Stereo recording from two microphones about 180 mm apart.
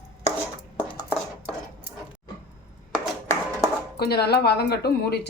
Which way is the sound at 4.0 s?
60° left (ahead or behind).